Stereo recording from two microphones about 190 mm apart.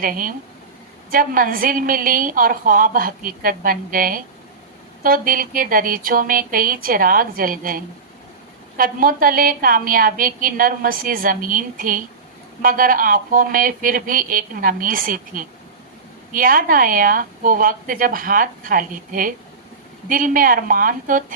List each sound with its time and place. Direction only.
0.0 s a woman's voice: 45° right (ahead or behind)
8.8 s a woman's voice: 50° right (ahead or behind)